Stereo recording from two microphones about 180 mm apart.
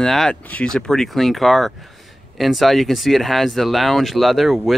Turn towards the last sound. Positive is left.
turn(degrees=0)  # may be behind; listen again after turning